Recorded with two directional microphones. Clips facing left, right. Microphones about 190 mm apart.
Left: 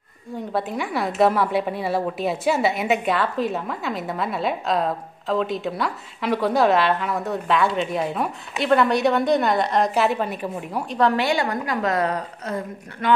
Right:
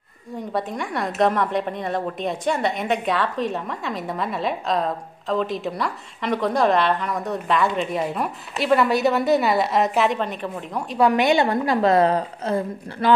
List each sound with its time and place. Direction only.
0.5 s a woman's voice: centre (ahead or behind)
11.0 s a woman's voice: 15° right (ahead or behind)